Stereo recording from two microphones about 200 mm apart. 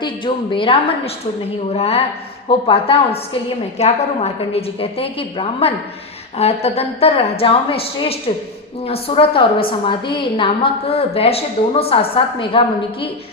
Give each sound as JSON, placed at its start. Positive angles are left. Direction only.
{"t": 0.0, "sound": "a woman's voice", "side_deg": 25}